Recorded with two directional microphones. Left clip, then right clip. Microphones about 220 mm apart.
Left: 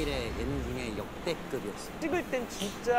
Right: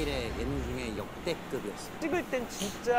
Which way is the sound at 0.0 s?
Centre (ahead or behind).